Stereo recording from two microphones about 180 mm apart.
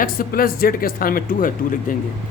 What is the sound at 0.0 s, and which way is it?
Speech, 55° left (ahead or behind).